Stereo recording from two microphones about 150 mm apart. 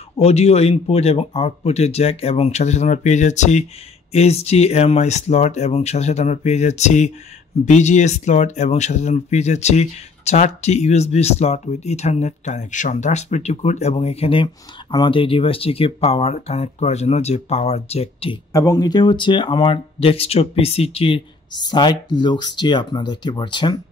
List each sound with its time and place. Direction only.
0.2 s speech: 45° left (ahead or behind)
18.5 s speech: 20° left (ahead or behind); by 21.2 s 40° left (ahead or behind)
21.5 s speech: 30° left (ahead or behind)